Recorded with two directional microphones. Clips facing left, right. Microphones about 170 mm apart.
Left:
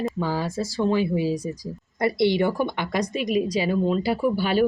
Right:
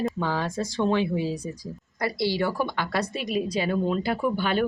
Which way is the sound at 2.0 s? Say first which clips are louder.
Left 5 dB; 20° left (ahead or behind).